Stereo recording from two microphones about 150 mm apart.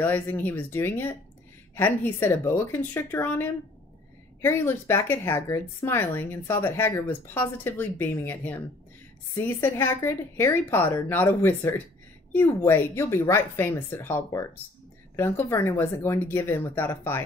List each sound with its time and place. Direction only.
0.0 s speech: 10° left (ahead or behind)